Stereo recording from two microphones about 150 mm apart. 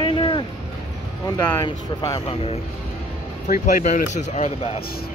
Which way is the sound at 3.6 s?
55° left (ahead or behind).